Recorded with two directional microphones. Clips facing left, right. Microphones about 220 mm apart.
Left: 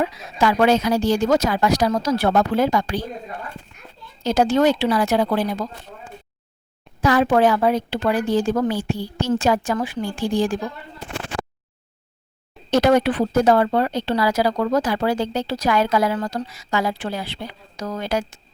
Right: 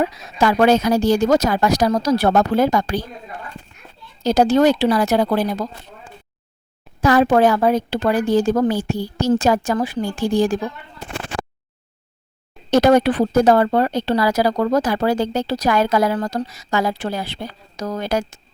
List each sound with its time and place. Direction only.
0.0 s speech: 40° right (ahead or behind)
4.2 s speech: 35° right (ahead or behind)
7.0 s a woman's voice: 40° right (ahead or behind)
12.7 s speech: 40° right (ahead or behind)